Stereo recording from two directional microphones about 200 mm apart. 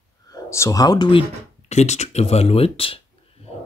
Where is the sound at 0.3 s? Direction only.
15° left (ahead or behind).